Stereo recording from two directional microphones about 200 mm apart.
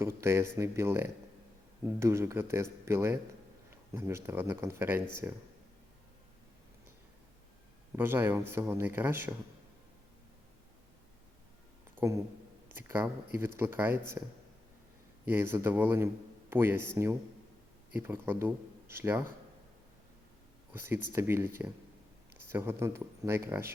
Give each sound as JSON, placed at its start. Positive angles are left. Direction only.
{"t": 0.0, "sound": "speech", "side_deg": -15}
{"t": 7.9, "sound": "speech", "side_deg": -10}
{"t": 11.9, "sound": "speech", "side_deg": -15}
{"t": 12.6, "sound": "a sound", "side_deg": -10}
{"t": 13.4, "sound": "speech", "side_deg": -10}
{"t": 15.3, "sound": "speech", "side_deg": -10}
{"t": 20.7, "sound": "speech", "side_deg": -10}